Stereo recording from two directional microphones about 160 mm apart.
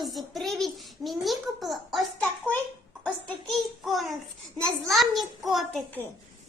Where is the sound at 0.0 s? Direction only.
Centre (ahead or behind).